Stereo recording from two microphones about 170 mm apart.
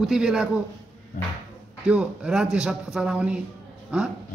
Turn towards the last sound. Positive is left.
turn(degrees=-5)  # may be behind; listen again after turning